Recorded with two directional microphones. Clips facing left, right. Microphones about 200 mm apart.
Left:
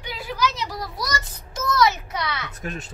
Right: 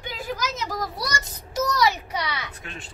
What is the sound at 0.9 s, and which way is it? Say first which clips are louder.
Speech: left 1 dB; 30° right (ahead or behind).